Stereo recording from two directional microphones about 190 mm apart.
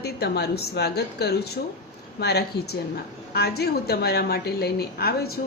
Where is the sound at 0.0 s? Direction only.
55° left (ahead or behind).